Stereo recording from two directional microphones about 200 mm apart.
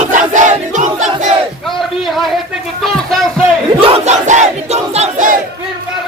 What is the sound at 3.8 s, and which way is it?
Battle cry, 30° right (ahead or behind).